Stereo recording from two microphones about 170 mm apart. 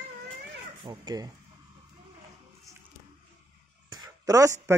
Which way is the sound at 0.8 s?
25° right (ahead or behind).